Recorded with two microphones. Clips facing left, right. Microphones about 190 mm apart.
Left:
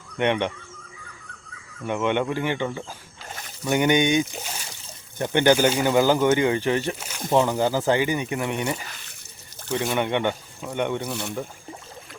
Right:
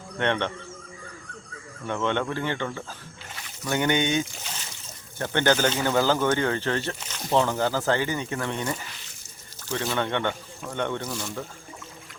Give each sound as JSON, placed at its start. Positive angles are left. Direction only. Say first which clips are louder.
{"t": 0.2, "sound": "speech", "louder": "left 3 dB", "side_deg": 15}
{"t": 1.9, "sound": "speech", "louder": "left 3 dB", "side_deg": 15}
{"t": 9.7, "sound": "speech", "louder": "left 3 dB", "side_deg": 15}
{"t": 11.1, "sound": "speech", "louder": "left 3 dB", "side_deg": 65}